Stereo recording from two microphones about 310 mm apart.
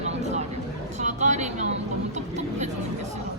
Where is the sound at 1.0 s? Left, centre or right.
Right.